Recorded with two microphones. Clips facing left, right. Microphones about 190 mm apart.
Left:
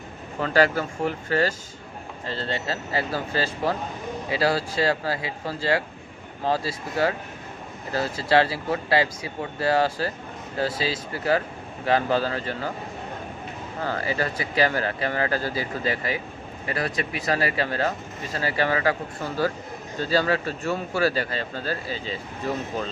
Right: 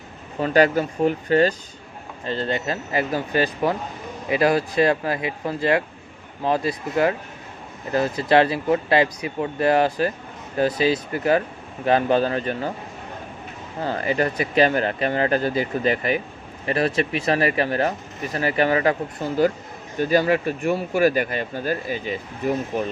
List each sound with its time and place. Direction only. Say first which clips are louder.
0.3 s speech: right 3 dB; 20° right (ahead or behind)
13.8 s speech: right 4 dB; 20° right (ahead or behind)